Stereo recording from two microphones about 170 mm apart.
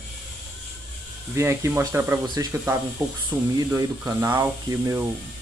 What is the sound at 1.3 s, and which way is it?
Speech, 15° right (ahead or behind).